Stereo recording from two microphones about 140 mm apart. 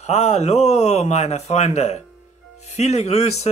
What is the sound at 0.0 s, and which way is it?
Speech, 50° left (ahead or behind).